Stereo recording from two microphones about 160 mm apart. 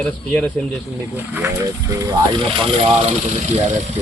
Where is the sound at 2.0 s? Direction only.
30° right (ahead or behind).